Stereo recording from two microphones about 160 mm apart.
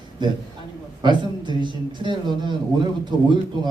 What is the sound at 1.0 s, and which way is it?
A man's voice, 30° right (ahead or behind).